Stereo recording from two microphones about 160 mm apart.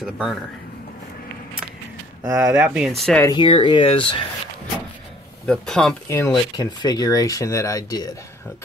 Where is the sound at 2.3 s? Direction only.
15° right (ahead or behind); by 3.2 s centre (ahead or behind).